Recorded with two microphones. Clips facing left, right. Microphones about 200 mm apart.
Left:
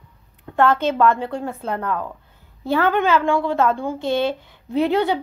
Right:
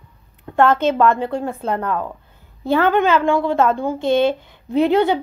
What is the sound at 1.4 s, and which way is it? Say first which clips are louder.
Speech: right 3 dB; 30° right (ahead or behind).